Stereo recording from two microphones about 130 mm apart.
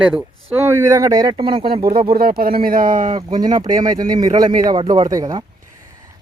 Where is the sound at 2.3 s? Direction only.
90° right.